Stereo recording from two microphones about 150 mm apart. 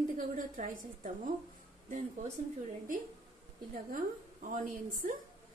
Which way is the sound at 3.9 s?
65° right (ahead or behind).